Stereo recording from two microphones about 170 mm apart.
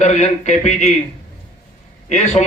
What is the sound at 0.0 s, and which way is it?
Speech, 45° left (ahead or behind).